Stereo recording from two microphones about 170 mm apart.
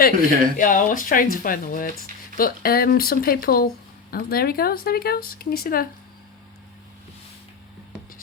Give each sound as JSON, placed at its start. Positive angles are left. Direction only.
{"t": 0.2, "sound": "speech", "side_deg": -55}
{"t": 0.5, "sound": "speech", "side_deg": 50}